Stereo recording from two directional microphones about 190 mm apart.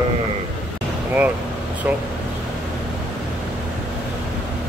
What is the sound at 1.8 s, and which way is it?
Speech, 10° right (ahead or behind).